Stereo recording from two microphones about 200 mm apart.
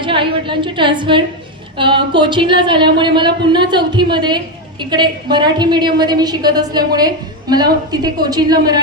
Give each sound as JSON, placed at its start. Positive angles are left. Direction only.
{"t": 0.0, "sound": "speech", "side_deg": -25}